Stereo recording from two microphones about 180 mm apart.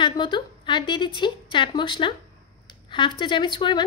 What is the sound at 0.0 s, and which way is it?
A woman's voice, 25° left (ahead or behind).